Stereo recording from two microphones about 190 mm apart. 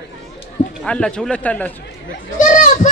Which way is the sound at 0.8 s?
5° left (ahead or behind).